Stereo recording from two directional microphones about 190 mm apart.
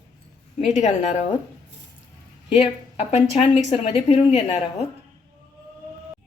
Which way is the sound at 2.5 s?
35° left (ahead or behind).